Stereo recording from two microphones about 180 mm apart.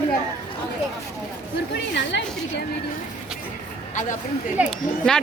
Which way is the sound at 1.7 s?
75° left (ahead or behind).